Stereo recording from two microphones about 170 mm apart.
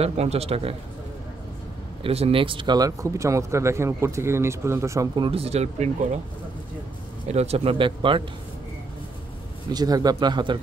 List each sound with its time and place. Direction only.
0.0 s speech: 40° right (ahead or behind)
2.0 s speech: 35° right (ahead or behind); by 5.2 s 20° right (ahead or behind)
5.2 s speech: 35° right (ahead or behind)
7.2 s speech: 40° right (ahead or behind)
9.7 s speech: 25° right (ahead or behind)